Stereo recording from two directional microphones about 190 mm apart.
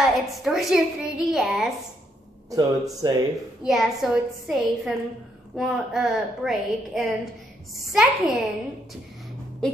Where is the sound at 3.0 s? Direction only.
20° right (ahead or behind).